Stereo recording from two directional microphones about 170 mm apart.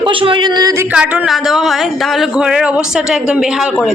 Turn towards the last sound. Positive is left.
turn(degrees=-5)  # may be behind; listen again after turning